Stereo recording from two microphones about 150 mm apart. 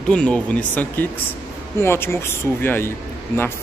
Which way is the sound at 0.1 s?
5° left (ahead or behind).